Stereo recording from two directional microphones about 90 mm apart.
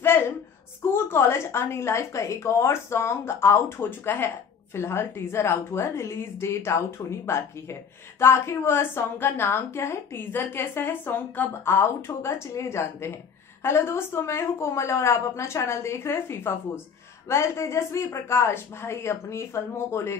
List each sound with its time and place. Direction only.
0.8 s a woman's voice: 25° left (ahead or behind)